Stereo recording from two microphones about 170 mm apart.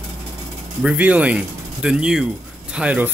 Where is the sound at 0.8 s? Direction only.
10° right (ahead or behind).